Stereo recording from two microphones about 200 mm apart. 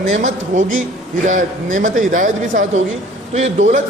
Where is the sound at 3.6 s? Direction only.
70° right (ahead or behind).